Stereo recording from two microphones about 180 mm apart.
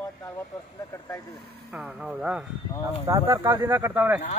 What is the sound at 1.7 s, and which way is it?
Speech, 5° right (ahead or behind).